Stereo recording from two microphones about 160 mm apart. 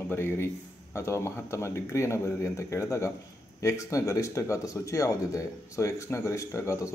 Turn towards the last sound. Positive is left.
turn(degrees=20)  # may be behind; listen again after turning